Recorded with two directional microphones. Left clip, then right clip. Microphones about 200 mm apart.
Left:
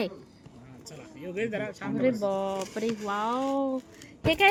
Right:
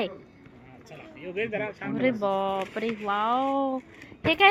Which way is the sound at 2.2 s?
10° left (ahead or behind).